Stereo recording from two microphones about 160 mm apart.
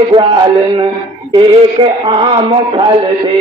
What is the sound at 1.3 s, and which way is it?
Speech, 35° right (ahead or behind).